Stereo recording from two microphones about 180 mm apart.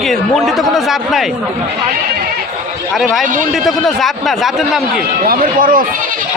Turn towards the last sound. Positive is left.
turn(degrees=-50)  # may be behind; listen again after turning